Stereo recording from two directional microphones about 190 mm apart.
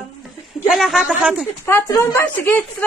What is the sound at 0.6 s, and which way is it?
Speech, centre (ahead or behind).